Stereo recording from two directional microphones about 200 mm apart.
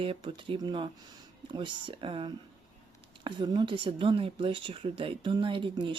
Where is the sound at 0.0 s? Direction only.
25° right (ahead or behind).